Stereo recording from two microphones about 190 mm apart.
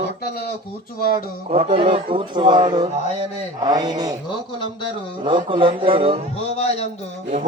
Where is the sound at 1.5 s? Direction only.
30° right (ahead or behind).